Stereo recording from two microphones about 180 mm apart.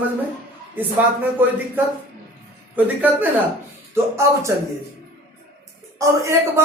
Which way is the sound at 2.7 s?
10° right (ahead or behind).